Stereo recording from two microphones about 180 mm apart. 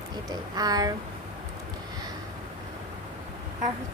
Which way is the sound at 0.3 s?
20° right (ahead or behind).